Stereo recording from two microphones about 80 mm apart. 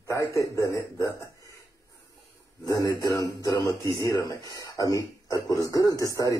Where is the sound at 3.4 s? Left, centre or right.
Left.